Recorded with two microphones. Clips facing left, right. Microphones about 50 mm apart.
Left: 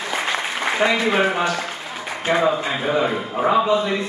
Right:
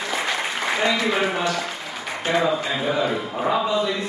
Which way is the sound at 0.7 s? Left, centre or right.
Left.